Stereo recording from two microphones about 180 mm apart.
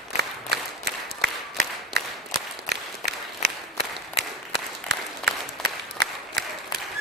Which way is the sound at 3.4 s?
65° right (ahead or behind).